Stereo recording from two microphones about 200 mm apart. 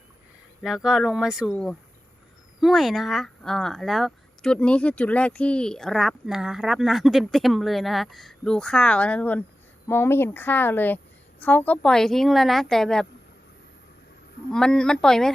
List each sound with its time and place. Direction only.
0.6 s a woman's voice: 5° right (ahead or behind)
14.5 s speech: 5° left (ahead or behind)